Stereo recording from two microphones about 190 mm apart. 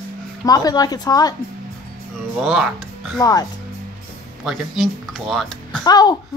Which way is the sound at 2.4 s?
Centre (ahead or behind).